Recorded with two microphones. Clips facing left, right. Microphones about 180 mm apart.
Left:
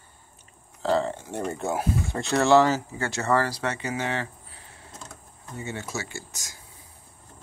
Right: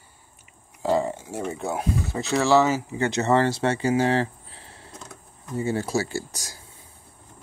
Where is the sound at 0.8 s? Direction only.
15° right (ahead or behind).